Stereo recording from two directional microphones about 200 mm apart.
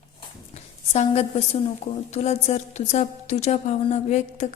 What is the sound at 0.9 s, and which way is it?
A woman's voice, 35° left (ahead or behind).